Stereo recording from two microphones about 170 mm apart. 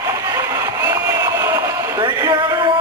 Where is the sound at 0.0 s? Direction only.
20° right (ahead or behind).